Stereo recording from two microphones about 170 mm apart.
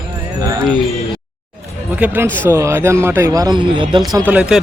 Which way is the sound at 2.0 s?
10° right (ahead or behind).